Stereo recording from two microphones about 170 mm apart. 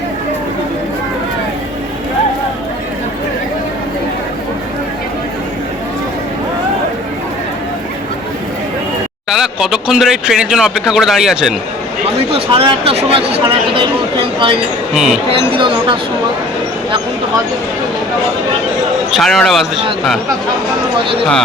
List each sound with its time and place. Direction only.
9.3 s speech: 5° right (ahead or behind)
12.3 s speech: 35° right (ahead or behind)
14.9 s speech: 5° right (ahead or behind)
15.3 s speech: 30° right (ahead or behind)
19.1 s speech: centre (ahead or behind)
21.0 s speech: 30° right (ahead or behind)